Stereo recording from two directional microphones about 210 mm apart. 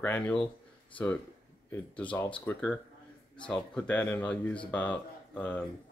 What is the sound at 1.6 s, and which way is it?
Speech, 5° left (ahead or behind).